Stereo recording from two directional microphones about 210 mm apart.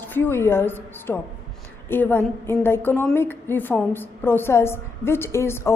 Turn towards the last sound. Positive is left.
turn(degrees=10)  # may be behind; listen again after turning